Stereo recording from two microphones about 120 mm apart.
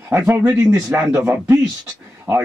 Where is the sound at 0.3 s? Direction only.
15° right (ahead or behind).